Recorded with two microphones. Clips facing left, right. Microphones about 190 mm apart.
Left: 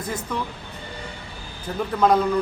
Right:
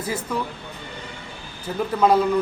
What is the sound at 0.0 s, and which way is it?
Speech, 5° right (ahead or behind).